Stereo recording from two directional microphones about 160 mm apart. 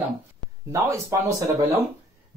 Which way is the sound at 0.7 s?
20° right (ahead or behind).